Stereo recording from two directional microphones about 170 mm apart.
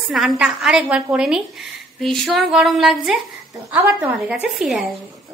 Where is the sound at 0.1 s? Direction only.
Centre (ahead or behind).